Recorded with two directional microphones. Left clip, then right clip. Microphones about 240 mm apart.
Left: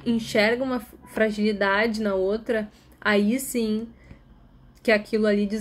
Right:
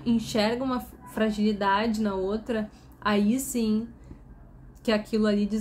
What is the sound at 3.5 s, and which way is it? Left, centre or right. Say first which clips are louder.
Speech: left 2 dB; right.